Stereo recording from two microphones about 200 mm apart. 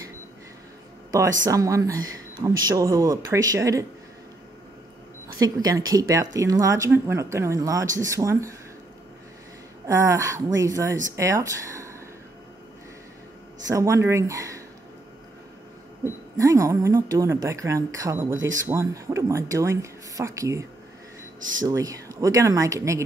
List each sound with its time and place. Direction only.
1.4 s speech: 15° right (ahead or behind)
5.4 s speech: 20° right (ahead or behind)
9.8 s speech: 15° right (ahead or behind)
13.7 s speech: 15° right (ahead or behind)
16.0 s speech: 15° right (ahead or behind)
21.6 s speech: 15° right (ahead or behind)